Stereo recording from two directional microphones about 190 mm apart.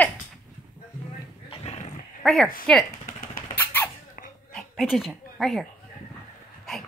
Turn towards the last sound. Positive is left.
turn(degrees=0)  # may be behind; listen again after turning